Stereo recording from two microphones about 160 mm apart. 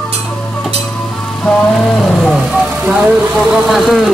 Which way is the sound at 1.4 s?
5° left (ahead or behind).